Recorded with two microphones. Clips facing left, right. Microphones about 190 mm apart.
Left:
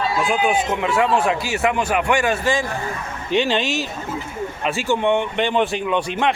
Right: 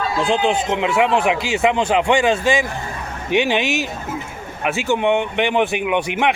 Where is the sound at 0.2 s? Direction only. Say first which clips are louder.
Right 3 dB; 25° right (ahead or behind).